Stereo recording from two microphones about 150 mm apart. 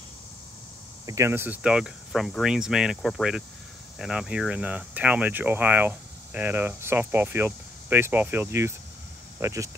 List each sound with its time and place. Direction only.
1.0 s speech: 20° right (ahead or behind)